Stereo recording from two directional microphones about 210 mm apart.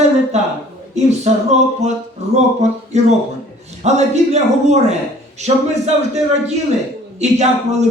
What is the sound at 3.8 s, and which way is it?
A man's voice, 30° right (ahead or behind).